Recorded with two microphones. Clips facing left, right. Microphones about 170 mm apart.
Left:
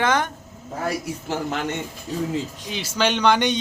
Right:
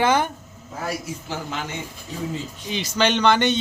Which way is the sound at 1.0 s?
60° left (ahead or behind).